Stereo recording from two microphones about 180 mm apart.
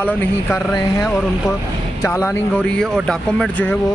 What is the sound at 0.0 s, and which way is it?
Speech, 10° left (ahead or behind).